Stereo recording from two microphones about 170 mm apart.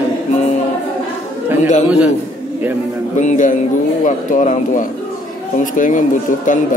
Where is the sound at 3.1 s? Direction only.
45° left (ahead or behind).